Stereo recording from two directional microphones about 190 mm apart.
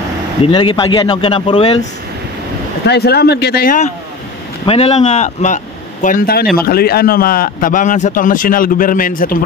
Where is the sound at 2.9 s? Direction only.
60° left (ahead or behind).